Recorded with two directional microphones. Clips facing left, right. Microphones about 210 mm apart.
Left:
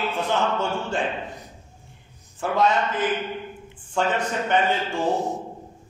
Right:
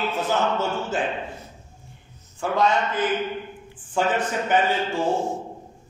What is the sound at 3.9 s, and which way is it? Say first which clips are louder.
Speech: right 1 dB; 5° right (ahead or behind).